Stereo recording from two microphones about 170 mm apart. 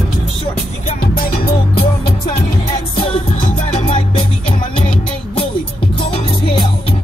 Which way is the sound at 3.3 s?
50° left (ahead or behind).